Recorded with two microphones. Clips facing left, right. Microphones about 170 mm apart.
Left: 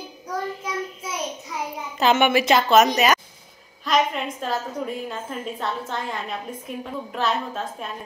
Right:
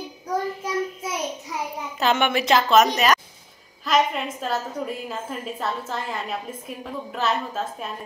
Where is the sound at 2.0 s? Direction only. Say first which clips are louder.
Left 3 dB; 5° left (ahead or behind).